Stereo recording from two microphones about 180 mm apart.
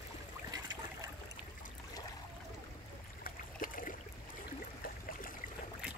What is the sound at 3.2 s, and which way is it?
Boat, 50° left (ahead or behind).